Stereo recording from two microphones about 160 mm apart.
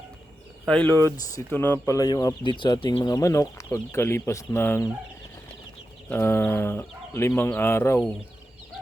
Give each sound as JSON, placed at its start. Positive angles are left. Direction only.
{"t": 0.6, "sound": "speech", "side_deg": 5}
{"t": 2.0, "sound": "speech", "side_deg": 25}
{"t": 6.1, "sound": "speech", "side_deg": 15}